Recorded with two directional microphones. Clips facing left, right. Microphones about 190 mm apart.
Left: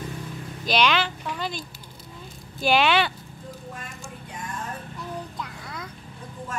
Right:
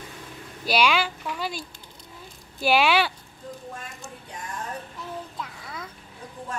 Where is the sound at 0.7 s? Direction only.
10° right (ahead or behind).